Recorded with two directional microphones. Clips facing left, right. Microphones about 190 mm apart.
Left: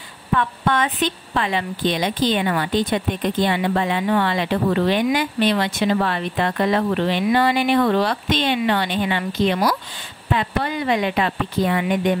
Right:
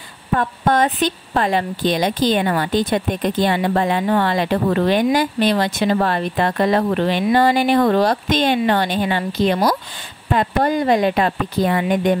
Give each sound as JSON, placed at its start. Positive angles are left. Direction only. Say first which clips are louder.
{"t": 0.3, "sound": "a woman's voice", "louder": "right 3 dB", "side_deg": -40}